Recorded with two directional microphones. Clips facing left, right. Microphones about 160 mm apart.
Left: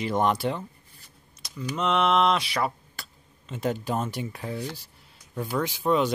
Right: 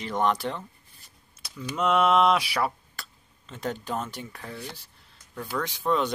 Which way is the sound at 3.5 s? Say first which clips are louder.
Left 4 dB; 5° left (ahead or behind).